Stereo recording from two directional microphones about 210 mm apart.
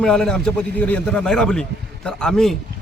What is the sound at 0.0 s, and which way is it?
A man's voice, 5° left (ahead or behind).